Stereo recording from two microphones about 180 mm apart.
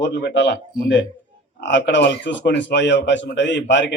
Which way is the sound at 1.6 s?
90° left.